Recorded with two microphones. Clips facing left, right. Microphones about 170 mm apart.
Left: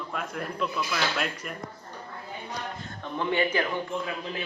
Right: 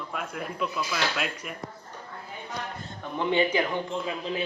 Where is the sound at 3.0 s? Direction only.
15° right (ahead or behind).